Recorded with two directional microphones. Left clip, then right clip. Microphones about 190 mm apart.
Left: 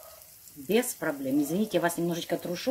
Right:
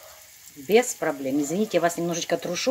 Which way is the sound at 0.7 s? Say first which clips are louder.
Right 7 dB; 5° right (ahead or behind).